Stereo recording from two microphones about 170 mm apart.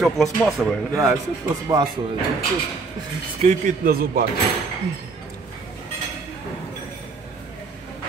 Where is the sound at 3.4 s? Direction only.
50° right (ahead or behind).